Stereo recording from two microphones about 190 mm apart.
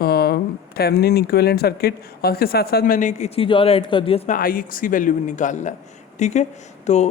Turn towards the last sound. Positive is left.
turn(degrees=35)  # may be behind; listen again after turning